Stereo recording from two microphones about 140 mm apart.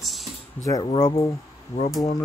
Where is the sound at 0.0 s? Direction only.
Centre (ahead or behind).